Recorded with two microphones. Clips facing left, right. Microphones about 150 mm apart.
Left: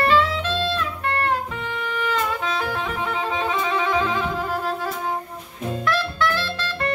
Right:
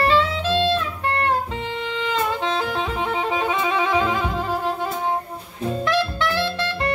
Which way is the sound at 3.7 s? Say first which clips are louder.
Right 2 dB; 20° right (ahead or behind).